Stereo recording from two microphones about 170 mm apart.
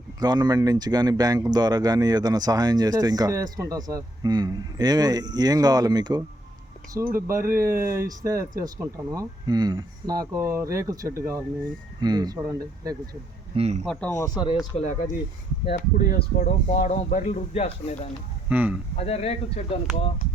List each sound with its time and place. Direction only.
0.2 s speech: 25° right (ahead or behind)
13.8 s speech: 5° left (ahead or behind)
14.2 s speech: 25° left (ahead or behind)
14.8 s speech: 45° left (ahead or behind)
15.7 s speech: 60° left (ahead or behind); by 17.9 s 40° left (ahead or behind)
18.4 s speech: 10° right (ahead or behind)
18.9 s speech: 35° left (ahead or behind)